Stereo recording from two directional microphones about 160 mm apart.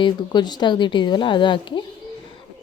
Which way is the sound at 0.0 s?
25° left (ahead or behind).